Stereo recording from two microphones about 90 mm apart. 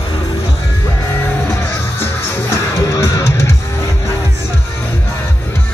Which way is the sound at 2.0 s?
30° left (ahead or behind).